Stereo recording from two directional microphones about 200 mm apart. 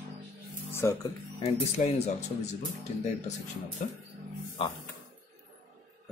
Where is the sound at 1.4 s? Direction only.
30° left (ahead or behind).